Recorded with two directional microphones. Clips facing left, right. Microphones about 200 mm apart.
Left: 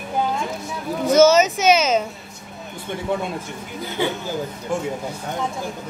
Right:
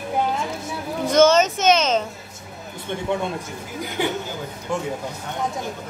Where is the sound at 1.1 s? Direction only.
5° left (ahead or behind).